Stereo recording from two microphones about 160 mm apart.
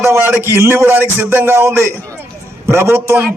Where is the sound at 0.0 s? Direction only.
15° right (ahead or behind).